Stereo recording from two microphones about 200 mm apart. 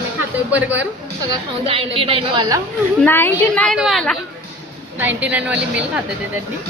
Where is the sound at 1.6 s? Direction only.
30° right (ahead or behind).